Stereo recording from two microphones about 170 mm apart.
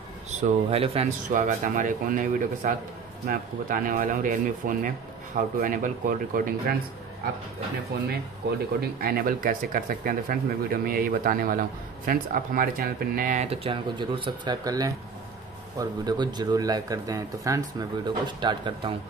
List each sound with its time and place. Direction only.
0.3 s speech: 40° right (ahead or behind)
1.3 s speech: 50° right (ahead or behind)
7.9 s speech: 70° right (ahead or behind)
9.0 s speech: 60° right (ahead or behind); by 18.9 s 30° right (ahead or behind)